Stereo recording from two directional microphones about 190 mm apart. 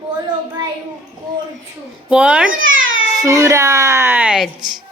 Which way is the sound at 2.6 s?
90° right.